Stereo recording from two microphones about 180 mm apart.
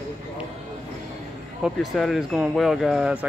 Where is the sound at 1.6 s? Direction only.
Centre (ahead or behind).